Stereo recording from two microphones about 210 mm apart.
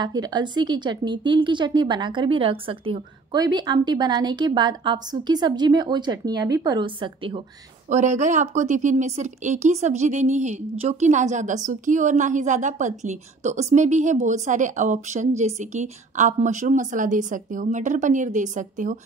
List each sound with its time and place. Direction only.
0.0 s speech: 20° right (ahead or behind)
7.9 s a woman's voice: 35° right (ahead or behind)